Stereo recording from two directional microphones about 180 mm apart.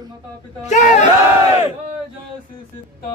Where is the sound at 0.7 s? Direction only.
40° left (ahead or behind).